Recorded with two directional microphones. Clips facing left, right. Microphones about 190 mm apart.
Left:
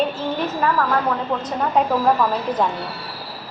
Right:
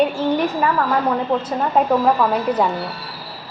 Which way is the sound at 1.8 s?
5° right (ahead or behind).